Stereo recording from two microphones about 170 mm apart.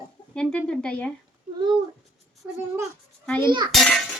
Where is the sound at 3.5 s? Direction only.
25° right (ahead or behind).